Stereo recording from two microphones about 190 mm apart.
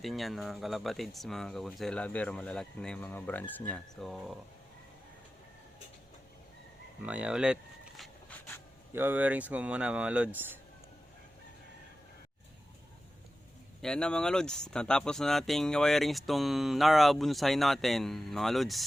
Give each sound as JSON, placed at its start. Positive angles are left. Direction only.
{"t": 0.0, "sound": "speech", "side_deg": 0}
{"t": 7.0, "sound": "a sound", "side_deg": -5}
{"t": 8.9, "sound": "speech", "side_deg": -10}
{"t": 13.8, "sound": "speech", "side_deg": 5}